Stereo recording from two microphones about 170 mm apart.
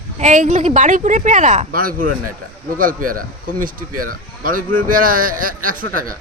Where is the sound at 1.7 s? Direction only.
60° right (ahead or behind).